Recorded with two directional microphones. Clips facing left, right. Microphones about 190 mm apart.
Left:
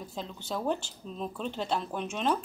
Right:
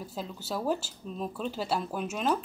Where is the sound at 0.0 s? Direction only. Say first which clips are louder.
Right 1 dB; 5° right (ahead or behind).